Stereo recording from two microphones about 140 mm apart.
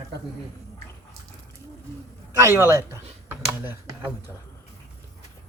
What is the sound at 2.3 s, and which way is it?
Speech, 20° right (ahead or behind).